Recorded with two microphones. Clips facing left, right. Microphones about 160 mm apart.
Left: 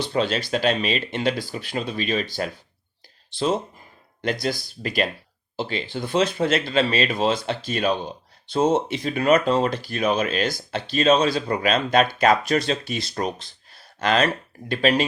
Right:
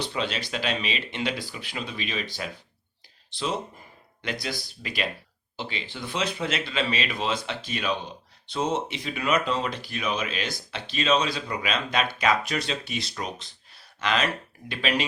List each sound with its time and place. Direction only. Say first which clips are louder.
0.1 s speech: left 7 dB; 40° left (ahead or behind)
3.3 s speech: left 6 dB; 45° left (ahead or behind)